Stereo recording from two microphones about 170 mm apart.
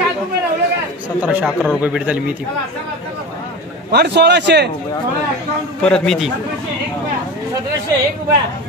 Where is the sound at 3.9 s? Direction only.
85° right.